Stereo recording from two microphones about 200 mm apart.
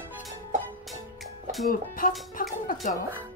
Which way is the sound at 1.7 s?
45° left (ahead or behind).